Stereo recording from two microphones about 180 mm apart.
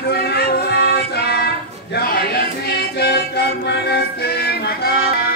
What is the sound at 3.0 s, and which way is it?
Music, 65° left (ahead or behind).